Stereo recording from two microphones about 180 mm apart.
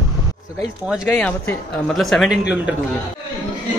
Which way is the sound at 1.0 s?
10° left (ahead or behind).